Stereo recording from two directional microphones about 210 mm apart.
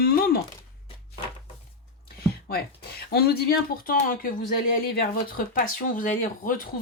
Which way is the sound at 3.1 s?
50° left (ahead or behind).